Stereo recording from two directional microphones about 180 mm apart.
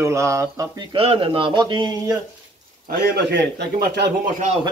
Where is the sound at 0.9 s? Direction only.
30° right (ahead or behind).